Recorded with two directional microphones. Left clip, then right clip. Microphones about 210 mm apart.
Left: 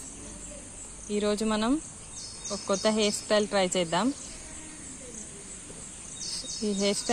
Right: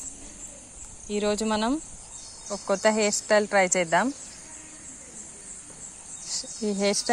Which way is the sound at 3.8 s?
30° right (ahead or behind).